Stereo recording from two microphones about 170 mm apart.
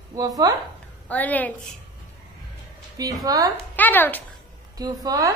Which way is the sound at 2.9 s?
20° right (ahead or behind).